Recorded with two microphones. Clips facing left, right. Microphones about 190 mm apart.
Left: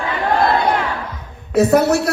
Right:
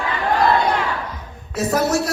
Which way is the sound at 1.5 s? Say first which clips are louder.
Left 6 dB; 60° left (ahead or behind).